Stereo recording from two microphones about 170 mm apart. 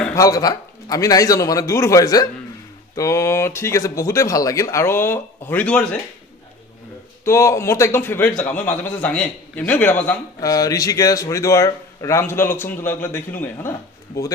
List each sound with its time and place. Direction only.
0.1 s a man's voice: 20° left (ahead or behind)
7.2 s speech: 15° left (ahead or behind)